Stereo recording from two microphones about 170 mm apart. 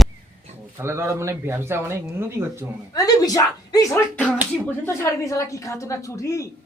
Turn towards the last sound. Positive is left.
turn(degrees=20)  # may be behind; listen again after turning